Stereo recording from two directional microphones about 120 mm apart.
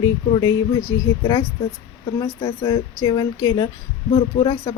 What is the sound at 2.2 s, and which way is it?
Speech, 40° left (ahead or behind).